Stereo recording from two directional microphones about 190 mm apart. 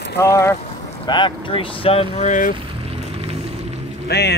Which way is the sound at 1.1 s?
25° left (ahead or behind).